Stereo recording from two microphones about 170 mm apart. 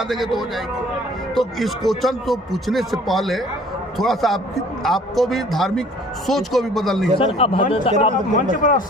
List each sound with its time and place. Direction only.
0.1 s speech: centre (ahead or behind)
7.2 s speech: 30° left (ahead or behind)
8.4 s speech: 50° left (ahead or behind)